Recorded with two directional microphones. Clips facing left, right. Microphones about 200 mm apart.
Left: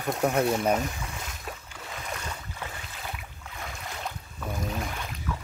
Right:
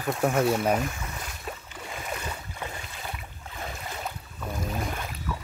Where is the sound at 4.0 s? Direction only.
Centre (ahead or behind).